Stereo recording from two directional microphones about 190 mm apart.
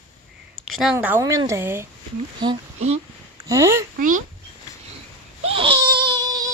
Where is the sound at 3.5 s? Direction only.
15° right (ahead or behind).